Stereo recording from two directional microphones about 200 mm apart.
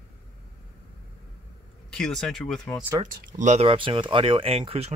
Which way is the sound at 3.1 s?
45° right (ahead or behind).